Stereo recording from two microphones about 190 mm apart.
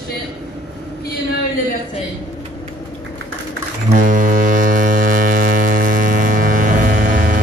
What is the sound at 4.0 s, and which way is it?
Hum, 45° right (ahead or behind).